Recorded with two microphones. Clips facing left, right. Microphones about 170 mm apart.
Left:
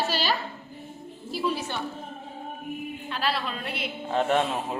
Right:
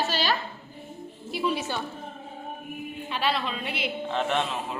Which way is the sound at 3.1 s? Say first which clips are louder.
Right 2 dB; centre (ahead or behind).